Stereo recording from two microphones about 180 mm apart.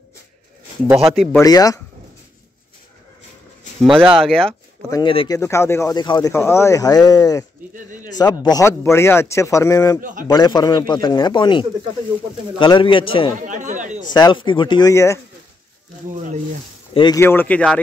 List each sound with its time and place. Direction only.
0.8 s speech: 15° right (ahead or behind)
1.1 s speech: centre (ahead or behind)
1.4 s speech: 20° left (ahead or behind)
4.2 s speech: 5° left (ahead or behind)
4.9 s speech: 30° left (ahead or behind)
5.4 s speech: 15° left (ahead or behind)
7.7 s speech: 50° right (ahead or behind)
8.2 s speech: 20° left (ahead or behind)
13.4 s speech: 45° right (ahead or behind)
14.1 s speech: 25° left (ahead or behind)
16.9 s speech: 25° left (ahead or behind)
17.2 s speech: 10° left (ahead or behind)